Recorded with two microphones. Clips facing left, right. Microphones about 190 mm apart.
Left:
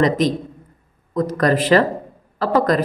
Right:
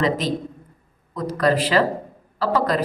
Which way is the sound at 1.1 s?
50° left (ahead or behind).